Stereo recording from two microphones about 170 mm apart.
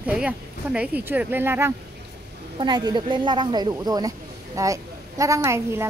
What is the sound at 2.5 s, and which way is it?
A woman's voice, 25° right (ahead or behind).